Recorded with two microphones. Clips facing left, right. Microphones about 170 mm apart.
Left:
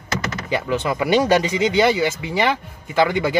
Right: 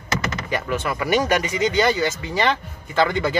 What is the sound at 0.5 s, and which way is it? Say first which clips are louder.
Speech: left 4 dB; 15° left (ahead or behind).